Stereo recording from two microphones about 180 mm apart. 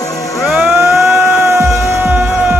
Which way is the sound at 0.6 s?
15° right (ahead or behind).